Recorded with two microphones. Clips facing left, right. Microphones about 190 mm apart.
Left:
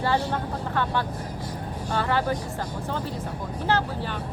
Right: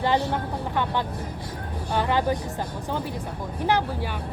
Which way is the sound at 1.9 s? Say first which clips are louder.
Right 2 dB; 15° right (ahead or behind).